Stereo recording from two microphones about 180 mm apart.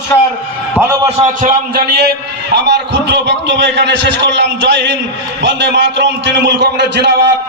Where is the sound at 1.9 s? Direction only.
65° right (ahead or behind).